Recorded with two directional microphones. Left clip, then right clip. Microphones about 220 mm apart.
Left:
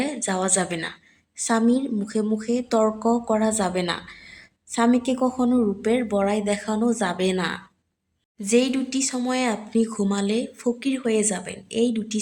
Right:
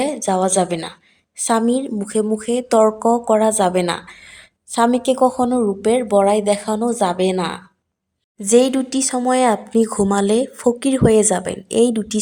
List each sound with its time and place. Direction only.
0.0 s speech: 25° right (ahead or behind)